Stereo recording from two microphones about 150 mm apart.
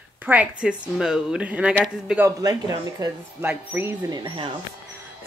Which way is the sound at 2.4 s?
25° right (ahead or behind).